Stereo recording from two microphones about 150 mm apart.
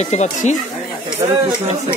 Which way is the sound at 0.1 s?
50° left (ahead or behind).